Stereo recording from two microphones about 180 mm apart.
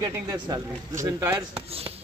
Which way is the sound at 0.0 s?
20° right (ahead or behind).